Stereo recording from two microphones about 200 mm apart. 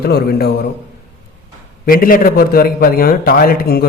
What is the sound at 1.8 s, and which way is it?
A man's voice, 45° left (ahead or behind).